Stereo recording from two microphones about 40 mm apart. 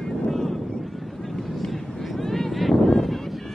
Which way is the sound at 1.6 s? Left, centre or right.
Centre.